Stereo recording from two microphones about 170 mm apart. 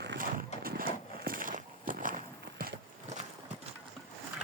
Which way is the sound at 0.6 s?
60° right (ahead or behind).